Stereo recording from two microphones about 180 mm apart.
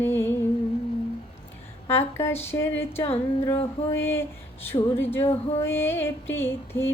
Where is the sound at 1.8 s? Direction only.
15° left (ahead or behind).